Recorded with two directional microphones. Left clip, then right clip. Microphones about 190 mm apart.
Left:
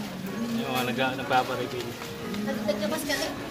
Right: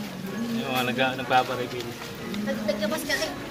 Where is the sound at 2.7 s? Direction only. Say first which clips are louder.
Right 1 dB; 15° left (ahead or behind).